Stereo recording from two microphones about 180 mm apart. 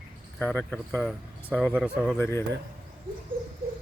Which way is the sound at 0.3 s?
5° left (ahead or behind).